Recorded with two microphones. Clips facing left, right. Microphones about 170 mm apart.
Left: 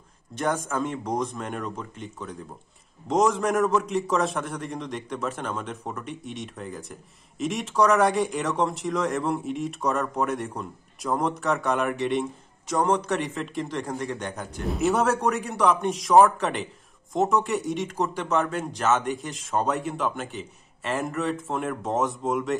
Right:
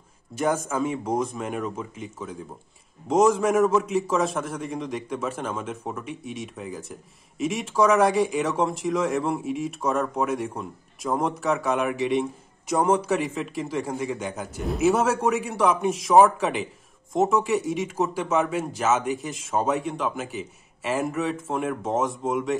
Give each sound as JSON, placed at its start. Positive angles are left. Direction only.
{"t": 0.3, "sound": "a man's voice", "side_deg": -5}